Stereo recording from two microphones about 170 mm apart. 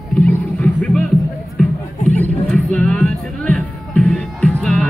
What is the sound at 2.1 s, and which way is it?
Music, 5° left (ahead or behind).